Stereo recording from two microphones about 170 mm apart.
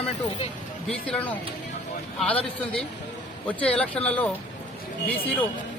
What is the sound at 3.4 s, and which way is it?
Speech, 5° left (ahead or behind).